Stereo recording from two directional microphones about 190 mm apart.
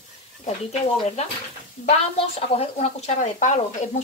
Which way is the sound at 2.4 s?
30° left (ahead or behind).